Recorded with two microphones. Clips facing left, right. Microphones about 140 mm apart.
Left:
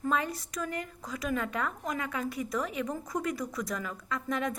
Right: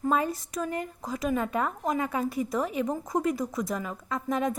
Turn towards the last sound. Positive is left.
turn(degrees=-25)  # may be behind; listen again after turning